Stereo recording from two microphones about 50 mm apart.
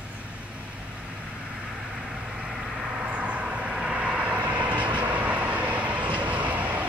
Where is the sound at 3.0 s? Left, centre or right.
Right.